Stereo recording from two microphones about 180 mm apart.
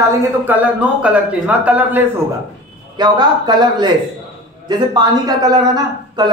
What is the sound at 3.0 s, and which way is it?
A man's voice, 25° right (ahead or behind).